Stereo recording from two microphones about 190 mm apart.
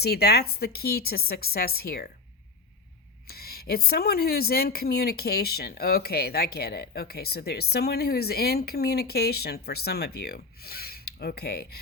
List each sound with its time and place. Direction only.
0.0 s speech: 55° left (ahead or behind)
3.2 s speech: 55° left (ahead or behind)